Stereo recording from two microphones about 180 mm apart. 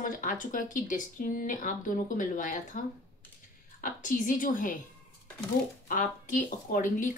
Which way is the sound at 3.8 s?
45° left (ahead or behind).